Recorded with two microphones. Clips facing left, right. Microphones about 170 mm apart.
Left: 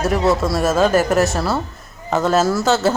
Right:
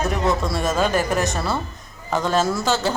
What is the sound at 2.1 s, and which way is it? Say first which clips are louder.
Music: left 4 dB; 5° left (ahead or behind).